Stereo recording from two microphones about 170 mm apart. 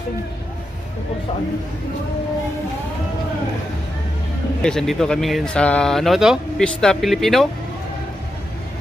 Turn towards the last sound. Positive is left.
turn(degrees=0)  # may be behind; listen again after turning